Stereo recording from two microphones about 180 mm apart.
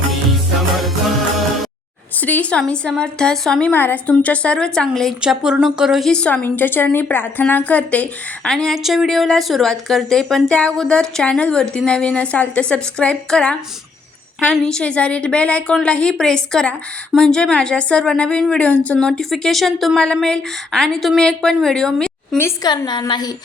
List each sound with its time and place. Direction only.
2.2 s a woman's voice: 10° left (ahead or behind)
22.4 s a woman's voice: 20° left (ahead or behind)